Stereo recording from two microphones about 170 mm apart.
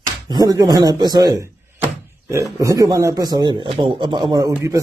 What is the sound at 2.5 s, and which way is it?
A man's voice, 20° right (ahead or behind).